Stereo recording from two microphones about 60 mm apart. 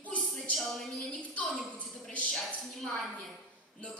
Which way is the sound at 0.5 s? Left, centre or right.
Centre.